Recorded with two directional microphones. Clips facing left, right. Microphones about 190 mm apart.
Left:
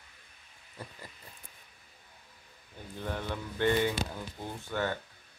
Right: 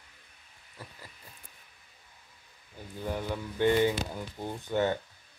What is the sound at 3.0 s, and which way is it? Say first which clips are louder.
Speech: right 3 dB; 10° right (ahead or behind).